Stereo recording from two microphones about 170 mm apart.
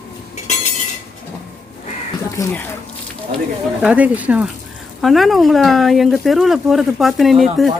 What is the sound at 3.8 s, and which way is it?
Speech, 10° right (ahead or behind).